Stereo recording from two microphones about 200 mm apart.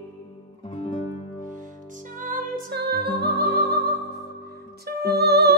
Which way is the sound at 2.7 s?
55° right (ahead or behind).